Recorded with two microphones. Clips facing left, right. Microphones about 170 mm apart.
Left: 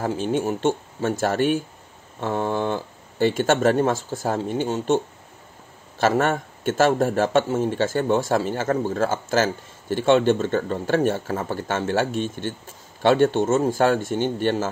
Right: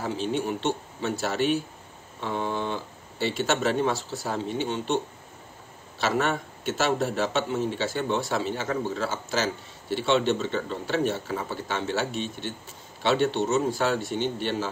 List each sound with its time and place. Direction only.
0.0 s speech: 50° left (ahead or behind)